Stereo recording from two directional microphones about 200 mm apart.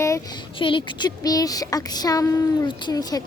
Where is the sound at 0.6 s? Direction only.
25° left (ahead or behind).